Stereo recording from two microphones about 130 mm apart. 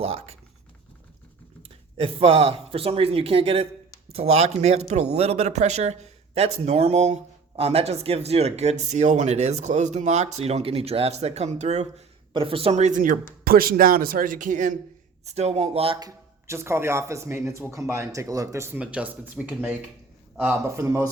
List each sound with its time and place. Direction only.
0.0 s speech: 50° right (ahead or behind)
1.6 s speech: 45° right (ahead or behind)
12.3 s speech: 45° right (ahead or behind)
12.7 s speech: 70° right (ahead or behind)
15.2 s speech: 55° right (ahead or behind)
16.0 s speech: 25° right (ahead or behind)
18.8 s a man's voice: 10° right (ahead or behind)
20.7 s speech: 25° right (ahead or behind)